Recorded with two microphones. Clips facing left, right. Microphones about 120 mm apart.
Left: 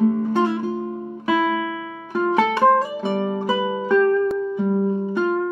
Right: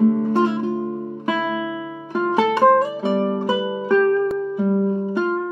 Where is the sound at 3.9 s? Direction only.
Centre (ahead or behind).